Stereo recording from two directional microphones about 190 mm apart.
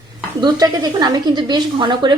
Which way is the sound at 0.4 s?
20° right (ahead or behind).